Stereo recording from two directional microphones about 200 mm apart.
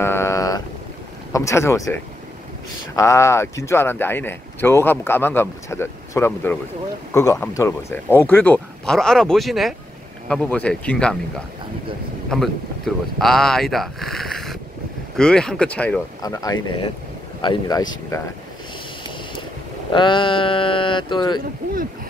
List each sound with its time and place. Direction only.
0.0 s boat: 10° left (ahead or behind)
1.3 s speech: 15° left (ahead or behind)
3.0 s speech: 15° left (ahead or behind)
16.2 s speech: 15° left (ahead or behind)
19.9 s speech: 25° left (ahead or behind)